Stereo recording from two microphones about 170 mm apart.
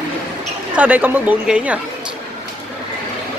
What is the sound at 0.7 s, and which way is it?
Speech, 10° right (ahead or behind).